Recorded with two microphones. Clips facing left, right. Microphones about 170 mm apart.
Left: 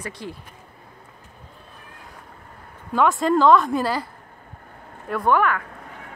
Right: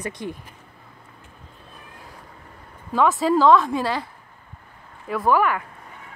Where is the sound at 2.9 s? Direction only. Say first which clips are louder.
Even; centre (ahead or behind).